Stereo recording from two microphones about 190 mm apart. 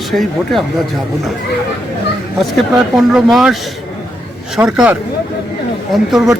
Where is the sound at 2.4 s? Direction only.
Centre (ahead or behind).